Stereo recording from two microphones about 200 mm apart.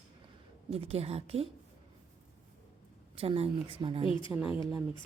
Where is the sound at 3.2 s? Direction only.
30° right (ahead or behind).